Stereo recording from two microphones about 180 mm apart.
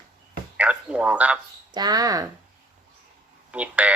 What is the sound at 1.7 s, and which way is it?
Speech, 20° right (ahead or behind).